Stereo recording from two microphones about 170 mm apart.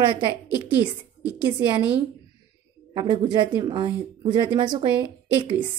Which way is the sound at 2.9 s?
30° right (ahead or behind).